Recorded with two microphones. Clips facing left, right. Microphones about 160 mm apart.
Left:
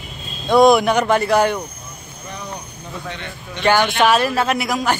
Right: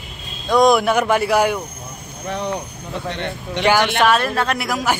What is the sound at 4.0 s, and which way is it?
Speech, 5° left (ahead or behind).